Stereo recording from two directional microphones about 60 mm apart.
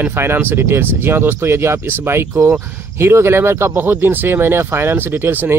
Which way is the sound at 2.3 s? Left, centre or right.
Right.